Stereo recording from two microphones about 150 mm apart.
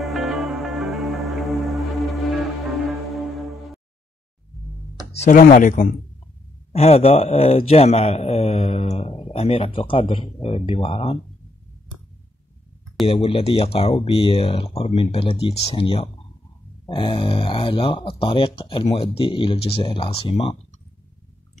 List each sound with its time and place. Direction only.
0.0 s music: centre (ahead or behind)
2.9 s foghorn: centre (ahead or behind)
5.2 s speech: 65° left (ahead or behind)
6.7 s a man's voice: 45° left (ahead or behind)
13.0 s speech: 40° left (ahead or behind)